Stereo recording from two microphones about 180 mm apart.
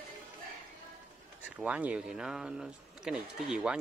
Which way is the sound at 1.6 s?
5° right (ahead or behind).